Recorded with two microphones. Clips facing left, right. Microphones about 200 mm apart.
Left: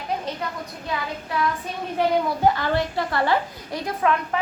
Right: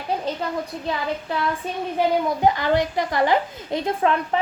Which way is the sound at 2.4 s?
15° right (ahead or behind).